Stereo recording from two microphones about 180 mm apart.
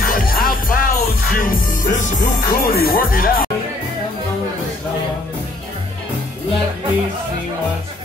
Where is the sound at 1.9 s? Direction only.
45° left (ahead or behind).